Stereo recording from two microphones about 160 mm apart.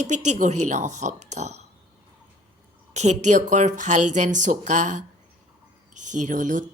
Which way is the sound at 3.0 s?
45° right (ahead or behind).